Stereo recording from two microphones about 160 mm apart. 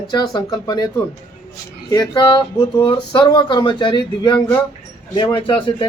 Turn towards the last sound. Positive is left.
turn(degrees=30)  # may be behind; listen again after turning